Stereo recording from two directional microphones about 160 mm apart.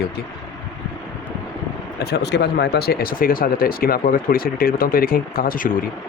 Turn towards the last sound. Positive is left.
turn(degrees=60)  # may be behind; listen again after turning